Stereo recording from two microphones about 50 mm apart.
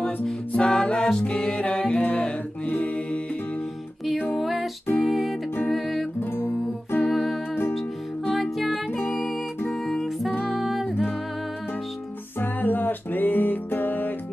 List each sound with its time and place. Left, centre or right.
0.5 s music: centre
4.4 s music: centre
6.3 s music: left
7.1 s music: centre
8.4 s music: centre
10.3 s music: centre
12.4 s music: left